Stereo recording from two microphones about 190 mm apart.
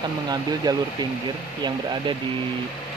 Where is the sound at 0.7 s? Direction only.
20° right (ahead or behind).